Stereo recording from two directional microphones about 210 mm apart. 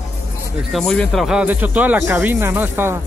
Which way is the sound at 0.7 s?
5° left (ahead or behind).